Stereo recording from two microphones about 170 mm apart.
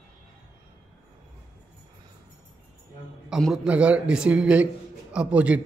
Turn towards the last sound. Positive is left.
turn(degrees=-10)  # may be behind; listen again after turning